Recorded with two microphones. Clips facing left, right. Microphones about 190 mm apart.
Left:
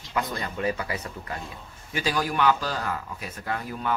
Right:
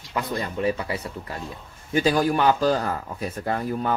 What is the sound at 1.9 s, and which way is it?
Speech, 45° right (ahead or behind).